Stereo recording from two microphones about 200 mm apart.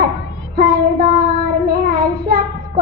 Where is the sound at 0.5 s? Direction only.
50° right (ahead or behind).